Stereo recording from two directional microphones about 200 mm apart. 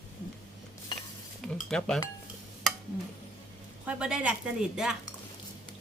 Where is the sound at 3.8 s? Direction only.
5° right (ahead or behind).